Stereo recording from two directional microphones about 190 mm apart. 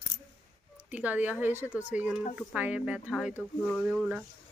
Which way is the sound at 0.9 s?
10° right (ahead or behind).